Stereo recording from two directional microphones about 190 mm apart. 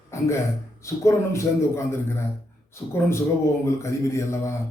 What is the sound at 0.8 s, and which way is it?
Speech, 15° left (ahead or behind).